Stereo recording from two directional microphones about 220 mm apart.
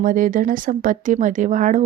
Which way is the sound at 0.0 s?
40° right (ahead or behind).